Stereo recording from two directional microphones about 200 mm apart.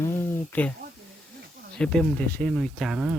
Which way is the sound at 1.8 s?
5° left (ahead or behind).